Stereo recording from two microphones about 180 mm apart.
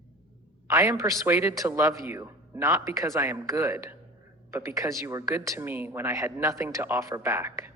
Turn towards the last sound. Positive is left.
turn(degrees=-15)  # may be behind; listen again after turning